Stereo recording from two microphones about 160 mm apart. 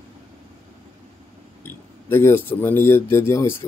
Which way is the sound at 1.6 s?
15° left (ahead or behind).